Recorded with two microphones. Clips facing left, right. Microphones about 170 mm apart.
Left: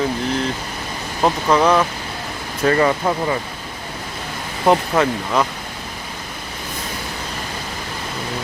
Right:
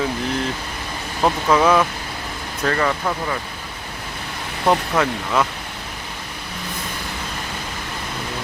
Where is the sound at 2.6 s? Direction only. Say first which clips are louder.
Left 5 dB; 20° left (ahead or behind).